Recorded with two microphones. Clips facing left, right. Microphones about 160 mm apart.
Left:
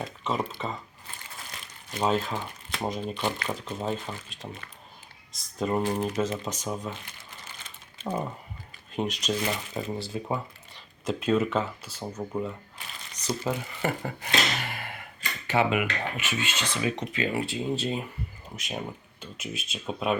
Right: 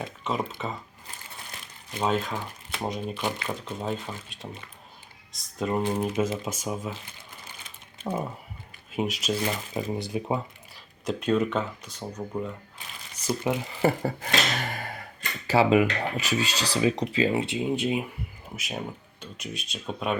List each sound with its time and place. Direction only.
0.0 s speech: centre (ahead or behind)
2.0 s speech: centre (ahead or behind)
5.9 s speech: 15° right (ahead or behind)
8.0 s speech: 5° right (ahead or behind)
11.0 s speech: centre (ahead or behind)
13.2 s speech: 20° right (ahead or behind)
13.8 s speech: 35° right (ahead or behind); by 20.1 s centre (ahead or behind)